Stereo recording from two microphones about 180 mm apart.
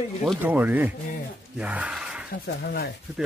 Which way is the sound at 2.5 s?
60° left (ahead or behind).